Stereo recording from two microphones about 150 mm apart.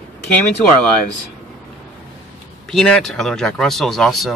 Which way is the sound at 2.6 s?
5° left (ahead or behind).